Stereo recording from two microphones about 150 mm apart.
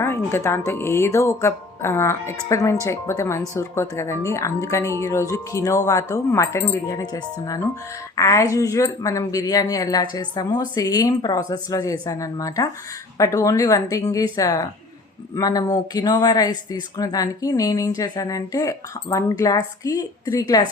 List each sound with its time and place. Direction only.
0.0 s speech: 15° left (ahead or behind)